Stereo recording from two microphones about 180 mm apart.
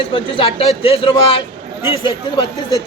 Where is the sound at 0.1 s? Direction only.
30° left (ahead or behind).